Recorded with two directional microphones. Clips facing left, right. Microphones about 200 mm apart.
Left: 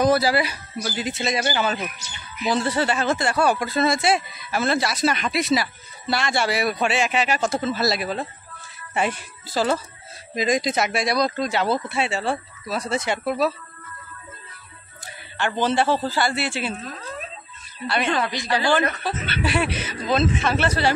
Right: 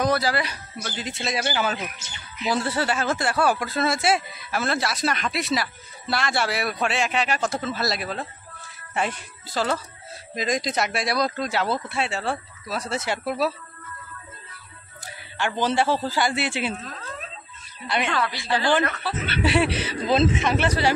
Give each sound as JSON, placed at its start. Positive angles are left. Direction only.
{"t": 0.0, "sound": "speech", "side_deg": 5}
{"t": 15.3, "sound": "a man's voice", "side_deg": -10}
{"t": 18.1, "sound": "speech", "side_deg": 20}
{"t": 19.4, "sound": "speech", "side_deg": -25}
{"t": 20.4, "sound": "a man's voice", "side_deg": -15}